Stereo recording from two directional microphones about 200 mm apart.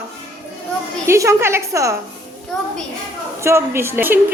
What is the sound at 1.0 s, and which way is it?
Speech, 15° right (ahead or behind).